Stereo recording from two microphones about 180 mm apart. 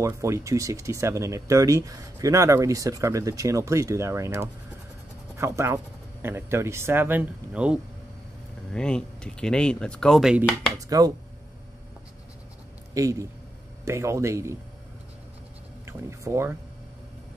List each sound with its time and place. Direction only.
0.0 s speech: 15° right (ahead or behind)
8.7 s speech: 5° left (ahead or behind)
10.8 s speech: 20° right (ahead or behind)
12.9 s speech: 15° right (ahead or behind)
15.9 s speech: 15° right (ahead or behind)